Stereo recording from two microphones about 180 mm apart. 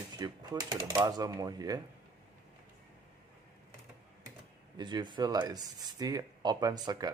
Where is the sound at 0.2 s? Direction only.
25° right (ahead or behind).